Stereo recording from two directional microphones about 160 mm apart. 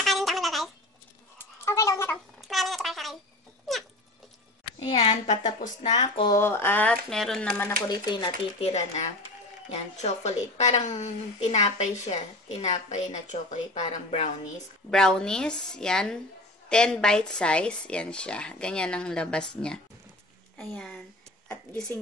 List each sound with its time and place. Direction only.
0.0 s a sound: centre (ahead or behind)
1.6 s cat: 15° left (ahead or behind)
2.4 s a sound: centre (ahead or behind)
5.2 s a woman's voice: 45° left (ahead or behind)
5.9 s speech: 30° left (ahead or behind)
6.3 s speech: 15° left (ahead or behind)
7.9 s a woman's voice: 25° left (ahead or behind); by 14.3 s 45° left (ahead or behind)
14.9 s speech: 5° left (ahead or behind)